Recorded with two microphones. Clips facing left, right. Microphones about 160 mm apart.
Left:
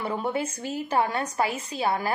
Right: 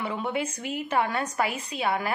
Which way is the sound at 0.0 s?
35° left (ahead or behind).